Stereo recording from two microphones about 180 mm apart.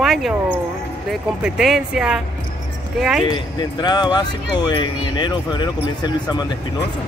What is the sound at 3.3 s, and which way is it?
Speech, 25° left (ahead or behind).